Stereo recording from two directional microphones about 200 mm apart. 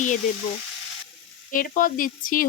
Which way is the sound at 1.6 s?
45° left (ahead or behind).